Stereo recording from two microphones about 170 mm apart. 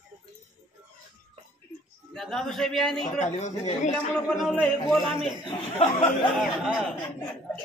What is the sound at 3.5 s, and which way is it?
Speech, 45° left (ahead or behind).